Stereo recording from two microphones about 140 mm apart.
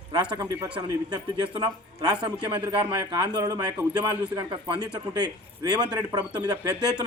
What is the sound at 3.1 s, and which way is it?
Speech, 25° right (ahead or behind).